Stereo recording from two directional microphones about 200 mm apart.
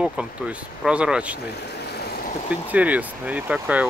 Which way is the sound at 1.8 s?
50° left (ahead or behind).